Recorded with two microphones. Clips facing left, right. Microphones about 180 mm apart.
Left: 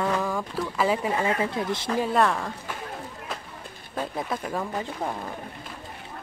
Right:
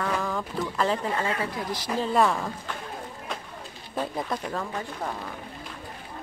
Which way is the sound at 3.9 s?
5° left (ahead or behind).